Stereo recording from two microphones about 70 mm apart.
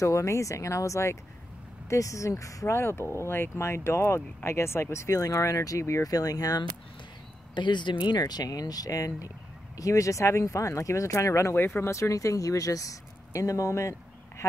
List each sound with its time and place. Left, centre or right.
0.0 s speech: left
6.0 s speech: left
7.5 s speech: left
11.5 s speech: left